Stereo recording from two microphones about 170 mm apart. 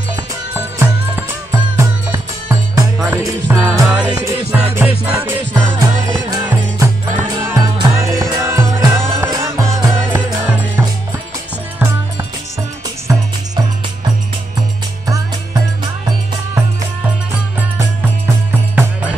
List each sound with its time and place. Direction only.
0.1 s music: 15° right (ahead or behind)
4.6 s music: 5° right (ahead or behind)
13.1 s music: 25° right (ahead or behind)
17.7 s music: 10° right (ahead or behind)